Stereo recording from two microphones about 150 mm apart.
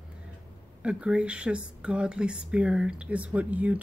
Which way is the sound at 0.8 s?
5° right (ahead or behind).